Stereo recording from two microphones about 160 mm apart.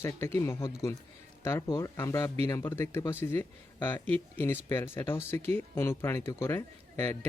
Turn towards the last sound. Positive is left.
turn(degrees=15)  # may be behind; listen again after turning